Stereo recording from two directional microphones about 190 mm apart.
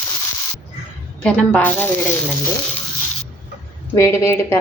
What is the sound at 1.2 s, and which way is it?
Speech, 5° left (ahead or behind).